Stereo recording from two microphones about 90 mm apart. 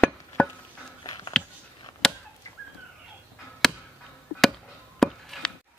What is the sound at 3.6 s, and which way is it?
Chop, 5° left (ahead or behind).